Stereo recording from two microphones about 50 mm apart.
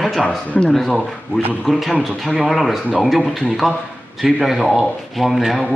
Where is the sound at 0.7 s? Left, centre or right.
Centre.